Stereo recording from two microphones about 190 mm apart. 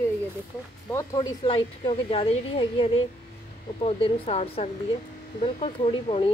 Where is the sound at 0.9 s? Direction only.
20° left (ahead or behind).